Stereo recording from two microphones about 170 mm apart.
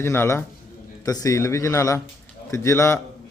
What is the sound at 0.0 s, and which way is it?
A man's voice, 15° left (ahead or behind).